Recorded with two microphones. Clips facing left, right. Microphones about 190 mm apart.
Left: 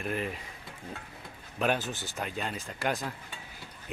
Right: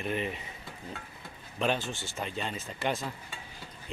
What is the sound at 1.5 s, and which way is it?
Speech, 5° left (ahead or behind).